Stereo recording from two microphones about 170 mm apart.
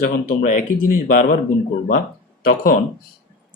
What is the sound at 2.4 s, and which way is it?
Speech, 55° left (ahead or behind).